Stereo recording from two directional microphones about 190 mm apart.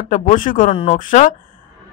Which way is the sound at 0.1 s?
40° left (ahead or behind).